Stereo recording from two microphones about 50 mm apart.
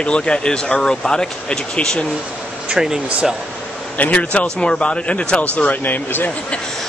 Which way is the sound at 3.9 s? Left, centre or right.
Left.